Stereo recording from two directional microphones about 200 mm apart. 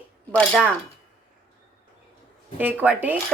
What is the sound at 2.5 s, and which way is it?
Speech, 10° right (ahead or behind).